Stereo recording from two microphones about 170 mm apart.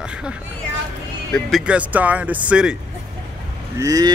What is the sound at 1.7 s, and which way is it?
Speech, 10° right (ahead or behind).